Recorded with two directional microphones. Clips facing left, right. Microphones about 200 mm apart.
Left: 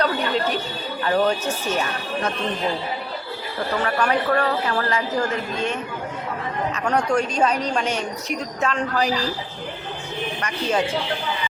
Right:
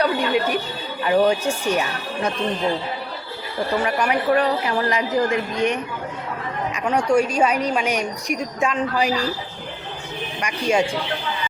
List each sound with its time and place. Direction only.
0.0 s a sound: 10° right (ahead or behind)
1.0 s a woman's voice: 10° right (ahead or behind)
3.8 s a woman's voice: 10° right (ahead or behind)
6.8 s a woman's voice: 10° right (ahead or behind)
10.4 s a woman's voice: 10° right (ahead or behind)